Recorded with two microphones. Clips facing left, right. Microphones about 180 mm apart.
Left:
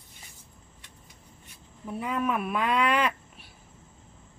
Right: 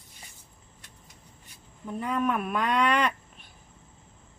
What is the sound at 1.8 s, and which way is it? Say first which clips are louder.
Speech: right 1 dB; 5° left (ahead or behind).